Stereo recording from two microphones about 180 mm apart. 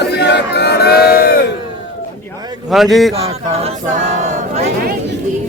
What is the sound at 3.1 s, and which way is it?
Speech, 35° right (ahead or behind).